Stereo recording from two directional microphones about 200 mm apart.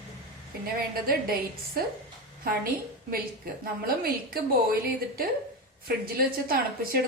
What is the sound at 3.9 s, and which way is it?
Speech, 50° right (ahead or behind).